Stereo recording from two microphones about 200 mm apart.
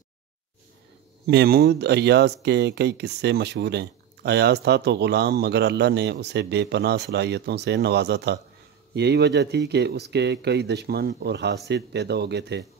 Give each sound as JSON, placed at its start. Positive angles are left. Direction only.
{"t": 1.2, "sound": "speech", "side_deg": -50}